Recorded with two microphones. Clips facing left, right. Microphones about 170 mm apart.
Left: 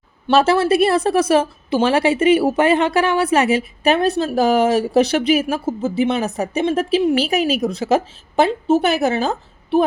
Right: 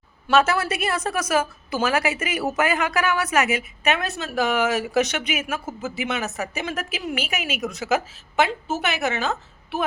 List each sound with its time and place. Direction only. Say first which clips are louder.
0.3 s a woman's voice: left 6 dB; 30° left (ahead or behind)